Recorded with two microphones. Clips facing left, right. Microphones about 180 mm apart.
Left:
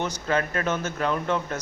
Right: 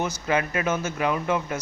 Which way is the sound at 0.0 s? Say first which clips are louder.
Right 1 dB; 10° right (ahead or behind).